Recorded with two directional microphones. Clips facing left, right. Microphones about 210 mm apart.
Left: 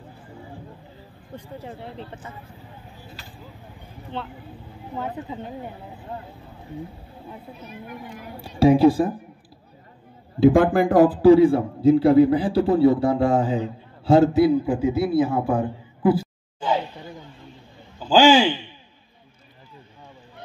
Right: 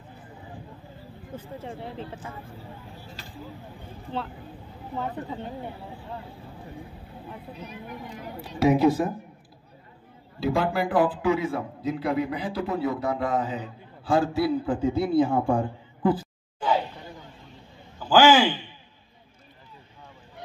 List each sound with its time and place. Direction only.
1.3 s speech: centre (ahead or behind)
4.1 s speech: centre (ahead or behind)
8.4 s a man's voice: 30° left (ahead or behind)
10.4 s a man's voice: 50° left (ahead or behind); by 14.8 s 20° left (ahead or behind)
14.8 s a man's voice: 5° left (ahead or behind)
17.9 s a man's voice: 25° left (ahead or behind)